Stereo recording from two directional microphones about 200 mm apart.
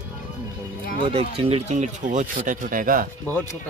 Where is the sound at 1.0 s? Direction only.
30° right (ahead or behind); by 3.1 s 45° right (ahead or behind).